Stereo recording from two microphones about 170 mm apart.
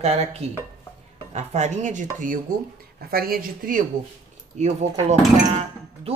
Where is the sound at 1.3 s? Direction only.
40° right (ahead or behind).